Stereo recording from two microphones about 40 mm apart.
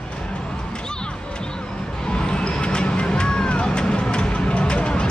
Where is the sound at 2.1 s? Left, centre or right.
Left.